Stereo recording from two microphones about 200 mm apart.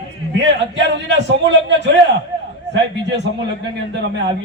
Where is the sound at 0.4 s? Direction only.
60° right (ahead or behind).